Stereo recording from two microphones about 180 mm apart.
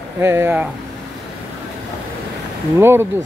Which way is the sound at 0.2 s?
15° right (ahead or behind).